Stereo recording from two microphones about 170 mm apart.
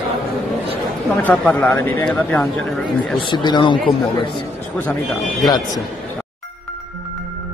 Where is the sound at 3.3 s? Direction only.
25° left (ahead or behind).